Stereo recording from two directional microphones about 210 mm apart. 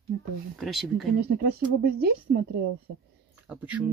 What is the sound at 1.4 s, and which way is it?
Speech, 45° right (ahead or behind).